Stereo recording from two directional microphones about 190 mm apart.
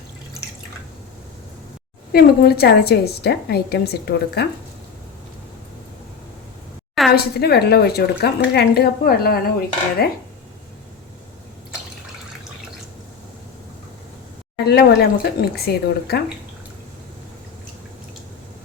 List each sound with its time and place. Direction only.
2.1 s a woman's voice: 55° left (ahead or behind)
7.2 s a woman's voice: 55° left (ahead or behind)
14.6 s a woman's voice: 60° left (ahead or behind)